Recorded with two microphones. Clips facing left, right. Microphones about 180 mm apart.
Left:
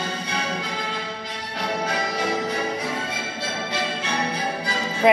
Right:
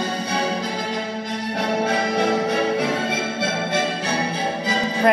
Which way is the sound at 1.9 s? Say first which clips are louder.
Right 5 dB; 65° right (ahead or behind).